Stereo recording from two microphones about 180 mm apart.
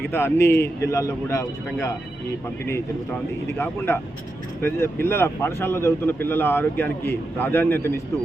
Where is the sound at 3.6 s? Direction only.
10° left (ahead or behind).